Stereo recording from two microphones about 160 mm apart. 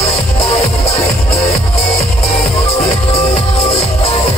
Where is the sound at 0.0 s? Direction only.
40° left (ahead or behind).